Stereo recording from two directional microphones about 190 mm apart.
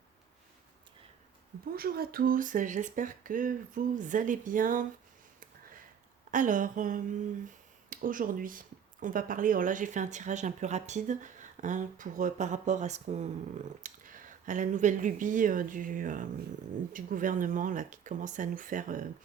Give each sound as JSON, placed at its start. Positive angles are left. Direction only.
{"t": 1.7, "sound": "speech", "side_deg": -50}
{"t": 6.3, "sound": "speech", "side_deg": -45}